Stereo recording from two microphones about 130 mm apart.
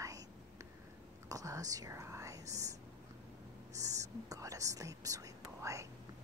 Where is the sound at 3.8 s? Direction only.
25° right (ahead or behind).